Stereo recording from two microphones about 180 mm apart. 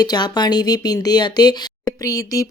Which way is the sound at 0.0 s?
20° left (ahead or behind).